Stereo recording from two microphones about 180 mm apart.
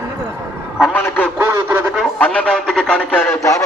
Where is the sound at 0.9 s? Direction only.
10° left (ahead or behind).